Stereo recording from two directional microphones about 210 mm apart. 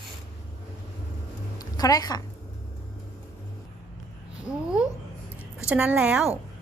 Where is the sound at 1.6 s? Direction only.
15° left (ahead or behind).